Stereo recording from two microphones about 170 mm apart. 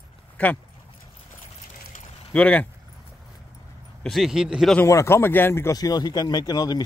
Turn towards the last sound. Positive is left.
turn(degrees=25)  # may be behind; listen again after turning